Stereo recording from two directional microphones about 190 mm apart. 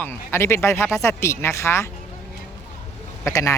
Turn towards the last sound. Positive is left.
turn(degrees=15)  # may be behind; listen again after turning